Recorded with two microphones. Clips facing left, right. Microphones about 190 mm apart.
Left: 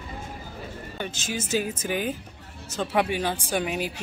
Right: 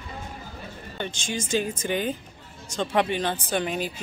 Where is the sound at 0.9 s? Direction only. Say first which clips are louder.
Right 1 dB; 5° left (ahead or behind).